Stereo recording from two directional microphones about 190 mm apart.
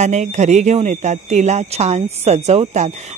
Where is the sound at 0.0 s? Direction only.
40° right (ahead or behind).